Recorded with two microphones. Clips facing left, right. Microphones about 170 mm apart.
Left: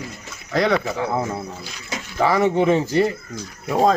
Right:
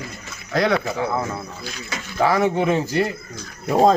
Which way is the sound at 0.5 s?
5° right (ahead or behind).